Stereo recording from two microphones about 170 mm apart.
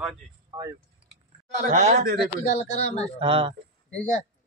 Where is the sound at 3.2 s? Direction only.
30° right (ahead or behind).